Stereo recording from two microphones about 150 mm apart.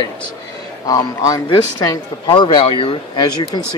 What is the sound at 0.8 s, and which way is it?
Speech, 25° left (ahead or behind).